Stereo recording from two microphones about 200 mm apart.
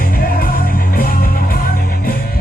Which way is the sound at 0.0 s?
45° left (ahead or behind).